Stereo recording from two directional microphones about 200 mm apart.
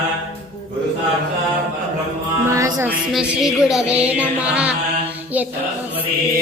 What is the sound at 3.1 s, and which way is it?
Music, centre (ahead or behind).